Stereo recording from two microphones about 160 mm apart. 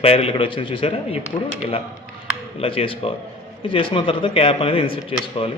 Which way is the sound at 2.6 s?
35° left (ahead or behind).